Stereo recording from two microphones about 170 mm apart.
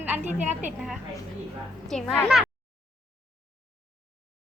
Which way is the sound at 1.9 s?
5° left (ahead or behind).